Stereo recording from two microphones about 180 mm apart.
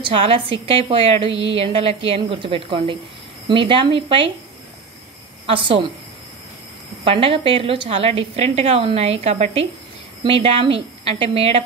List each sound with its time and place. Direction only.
0.0 s a woman's voice: 30° right (ahead or behind)
7.1 s a woman's voice: 30° right (ahead or behind)